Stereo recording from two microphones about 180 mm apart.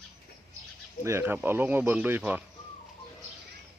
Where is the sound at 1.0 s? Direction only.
10° right (ahead or behind).